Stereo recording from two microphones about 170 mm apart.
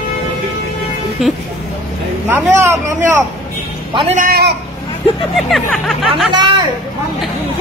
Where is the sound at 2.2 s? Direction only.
15° right (ahead or behind).